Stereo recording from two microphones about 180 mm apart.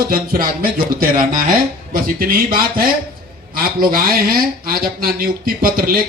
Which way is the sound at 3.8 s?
55° right (ahead or behind).